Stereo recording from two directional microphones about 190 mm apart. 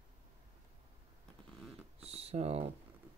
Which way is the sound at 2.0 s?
30° right (ahead or behind).